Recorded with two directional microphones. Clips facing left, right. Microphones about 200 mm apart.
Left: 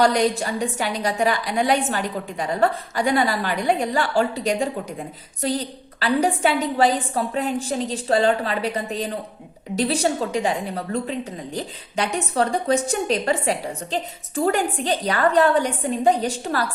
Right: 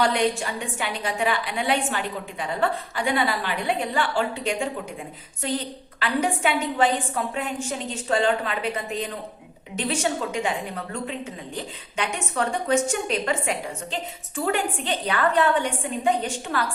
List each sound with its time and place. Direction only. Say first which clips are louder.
0.0 s a woman's voice: left 4 dB; 40° left (ahead or behind)